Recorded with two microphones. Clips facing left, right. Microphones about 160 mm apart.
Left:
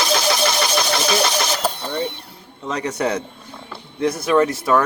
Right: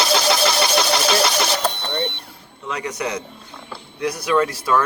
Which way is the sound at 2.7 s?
30° left (ahead or behind).